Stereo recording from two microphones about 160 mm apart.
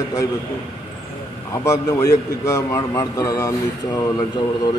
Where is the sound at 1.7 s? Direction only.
20° left (ahead or behind).